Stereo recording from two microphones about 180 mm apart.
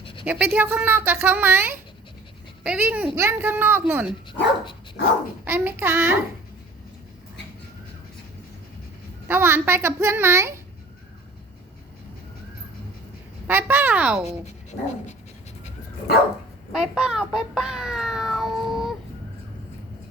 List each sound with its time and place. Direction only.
0.0 s a sound: 30° left (ahead or behind)
0.3 s speech: 10° right (ahead or behind)
5.5 s speech: 10° right (ahead or behind)
9.2 s speech: 15° right (ahead or behind)
13.5 s speech: 10° right (ahead or behind)
14.3 s speech: 40° left (ahead or behind)
16.7 s a child's voice: 5° right (ahead or behind)